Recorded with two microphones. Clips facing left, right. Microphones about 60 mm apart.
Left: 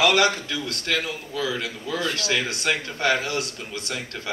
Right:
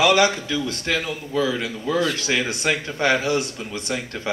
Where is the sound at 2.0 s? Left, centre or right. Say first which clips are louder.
Right 1 dB; right.